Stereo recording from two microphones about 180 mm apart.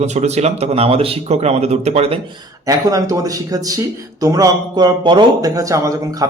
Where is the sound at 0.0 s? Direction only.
40° right (ahead or behind).